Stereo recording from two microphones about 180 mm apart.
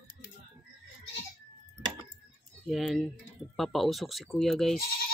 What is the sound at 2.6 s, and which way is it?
Speech, centre (ahead or behind).